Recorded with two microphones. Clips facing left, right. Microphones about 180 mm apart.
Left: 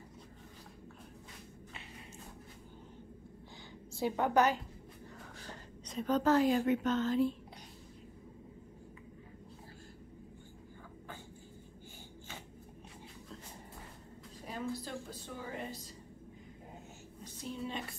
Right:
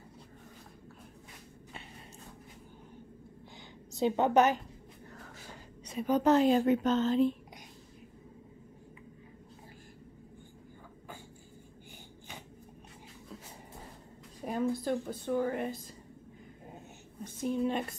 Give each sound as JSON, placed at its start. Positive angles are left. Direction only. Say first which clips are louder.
{"t": 3.9, "sound": "a woman's voice", "louder": "right 4 dB", "side_deg": -20}
{"t": 5.2, "sound": "a sound", "louder": "even", "side_deg": -10}
{"t": 6.3, "sound": "a woman's voice", "louder": "right 4 dB", "side_deg": -25}
{"t": 14.4, "sound": "a sound", "louder": "right 9 dB", "side_deg": -55}
{"t": 14.8, "sound": "a woman's voice", "louder": "right 10 dB", "side_deg": -55}
{"t": 17.2, "sound": "speech", "louder": "right 10 dB", "side_deg": -55}